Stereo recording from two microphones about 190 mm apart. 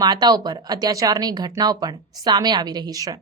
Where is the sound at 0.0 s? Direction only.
20° right (ahead or behind).